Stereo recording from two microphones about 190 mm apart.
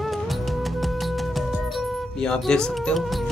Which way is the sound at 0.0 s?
Centre (ahead or behind).